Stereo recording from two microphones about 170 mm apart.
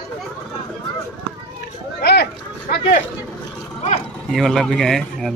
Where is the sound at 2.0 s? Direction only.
70° left (ahead or behind).